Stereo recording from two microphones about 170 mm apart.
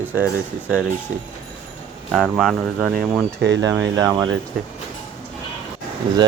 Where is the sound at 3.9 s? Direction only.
20° right (ahead or behind).